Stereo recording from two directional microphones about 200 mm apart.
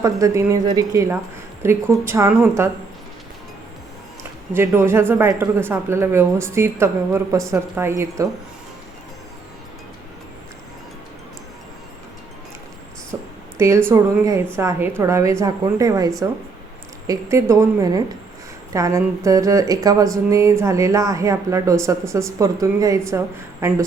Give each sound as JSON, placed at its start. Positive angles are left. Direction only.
{"t": 0.0, "sound": "speech", "side_deg": -15}
{"t": 4.5, "sound": "speech", "side_deg": -10}
{"t": 13.6, "sound": "speech", "side_deg": -15}